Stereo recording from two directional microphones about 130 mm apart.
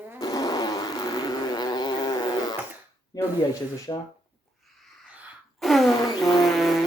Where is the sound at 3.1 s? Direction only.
25° left (ahead or behind).